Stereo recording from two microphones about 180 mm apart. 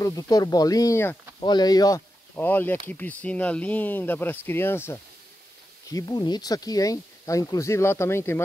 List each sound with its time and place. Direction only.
0.0 s speech: 20° left (ahead or behind)